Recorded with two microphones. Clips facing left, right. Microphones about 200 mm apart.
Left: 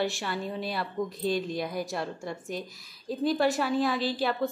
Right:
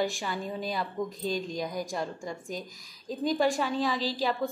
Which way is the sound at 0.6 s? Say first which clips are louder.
Left 1 dB; 45° right (ahead or behind).